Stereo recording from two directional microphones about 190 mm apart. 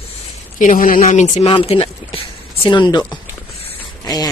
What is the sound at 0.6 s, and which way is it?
Speech, 45° left (ahead or behind).